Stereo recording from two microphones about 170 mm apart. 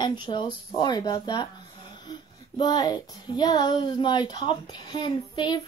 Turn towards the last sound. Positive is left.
turn(degrees=25)  # may be behind; listen again after turning